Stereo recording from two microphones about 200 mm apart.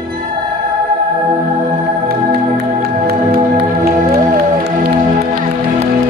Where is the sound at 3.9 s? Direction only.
50° right (ahead or behind).